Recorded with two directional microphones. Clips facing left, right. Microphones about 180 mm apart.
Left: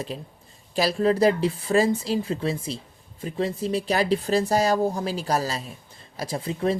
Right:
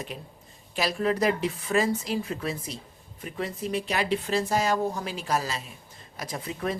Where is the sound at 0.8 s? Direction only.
35° left (ahead or behind).